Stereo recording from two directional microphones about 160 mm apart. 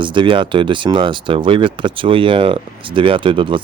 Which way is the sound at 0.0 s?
30° right (ahead or behind).